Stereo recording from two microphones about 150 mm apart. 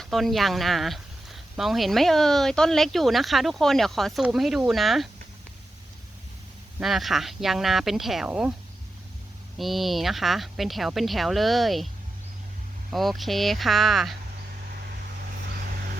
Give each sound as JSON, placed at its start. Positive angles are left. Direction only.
{"t": 0.0, "sound": "speech", "side_deg": 0}
{"t": 6.8, "sound": "speech", "side_deg": 0}
{"t": 9.6, "sound": "speech", "side_deg": 0}
{"t": 12.9, "sound": "speech", "side_deg": 0}